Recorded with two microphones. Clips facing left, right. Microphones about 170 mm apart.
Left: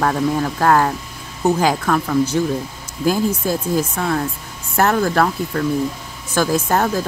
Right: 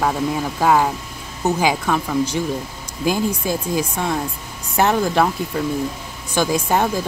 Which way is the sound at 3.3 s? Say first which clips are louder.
Left 2 dB; 10° right (ahead or behind).